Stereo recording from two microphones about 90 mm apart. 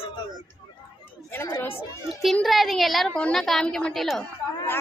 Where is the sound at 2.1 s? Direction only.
Centre (ahead or behind).